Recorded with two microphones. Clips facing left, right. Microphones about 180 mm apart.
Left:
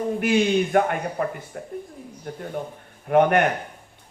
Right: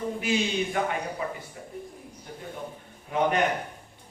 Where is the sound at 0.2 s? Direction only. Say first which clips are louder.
Left 8 dB; 60° left (ahead or behind).